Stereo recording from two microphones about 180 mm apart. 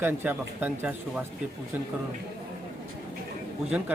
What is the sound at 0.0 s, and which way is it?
Speech, 10° right (ahead or behind).